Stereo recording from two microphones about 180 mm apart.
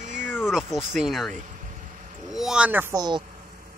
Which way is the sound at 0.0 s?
45° right (ahead or behind).